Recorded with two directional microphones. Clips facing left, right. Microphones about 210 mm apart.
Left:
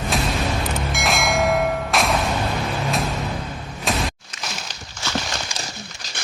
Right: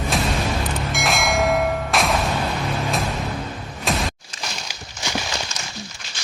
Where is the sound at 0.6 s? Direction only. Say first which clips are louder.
Even; centre (ahead or behind).